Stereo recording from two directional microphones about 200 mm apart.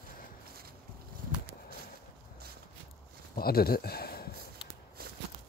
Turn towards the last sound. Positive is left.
turn(degrees=50)  # may be behind; listen again after turning